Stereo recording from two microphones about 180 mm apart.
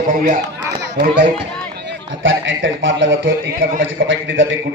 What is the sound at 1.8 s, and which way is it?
A man's voice, 85° right.